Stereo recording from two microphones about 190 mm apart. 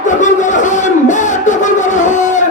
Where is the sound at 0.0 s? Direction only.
40° left (ahead or behind).